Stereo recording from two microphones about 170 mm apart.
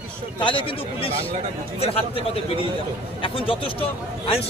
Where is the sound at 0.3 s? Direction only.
30° left (ahead or behind).